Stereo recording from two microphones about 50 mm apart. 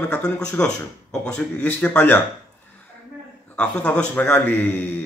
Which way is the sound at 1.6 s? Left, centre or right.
Left.